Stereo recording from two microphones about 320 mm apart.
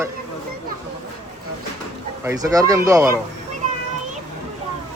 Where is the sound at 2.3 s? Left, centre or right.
Centre.